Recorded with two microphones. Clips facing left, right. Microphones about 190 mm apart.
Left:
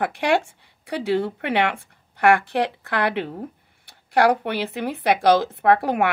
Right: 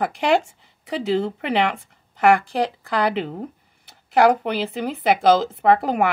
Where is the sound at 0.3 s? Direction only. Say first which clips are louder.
Right 3 dB; centre (ahead or behind).